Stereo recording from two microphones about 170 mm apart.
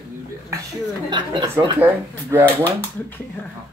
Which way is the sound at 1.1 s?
25° right (ahead or behind).